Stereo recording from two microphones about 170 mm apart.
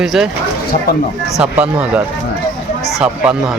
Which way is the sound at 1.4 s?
5° right (ahead or behind).